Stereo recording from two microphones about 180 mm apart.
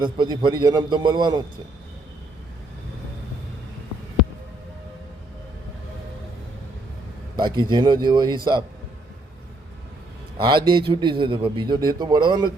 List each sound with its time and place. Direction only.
0.0 s a man's voice: 25° right (ahead or behind)
7.3 s a man's voice: 25° right (ahead or behind)
10.3 s a man's voice: 25° right (ahead or behind)